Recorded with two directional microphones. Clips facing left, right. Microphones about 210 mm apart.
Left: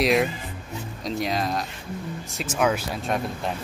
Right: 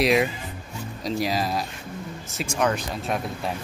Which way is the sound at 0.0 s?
Centre (ahead or behind).